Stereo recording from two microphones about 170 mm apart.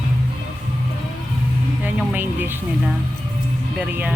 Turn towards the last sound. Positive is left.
turn(degrees=-10)  # may be behind; listen again after turning